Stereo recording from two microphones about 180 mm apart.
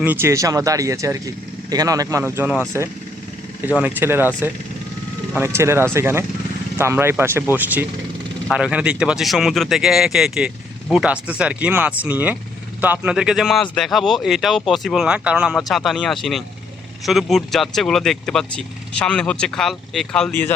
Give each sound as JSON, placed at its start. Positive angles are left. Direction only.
{"t": 0.0, "sound": "speech", "side_deg": -10}